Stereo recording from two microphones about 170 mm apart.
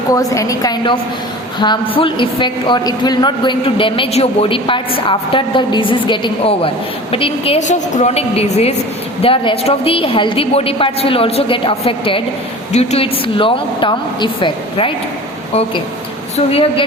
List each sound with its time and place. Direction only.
0.1 s a woman's voice: 20° left (ahead or behind)
16.5 s a woman's voice: 35° left (ahead or behind)